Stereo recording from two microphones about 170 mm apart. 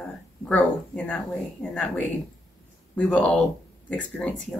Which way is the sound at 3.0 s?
5° left (ahead or behind).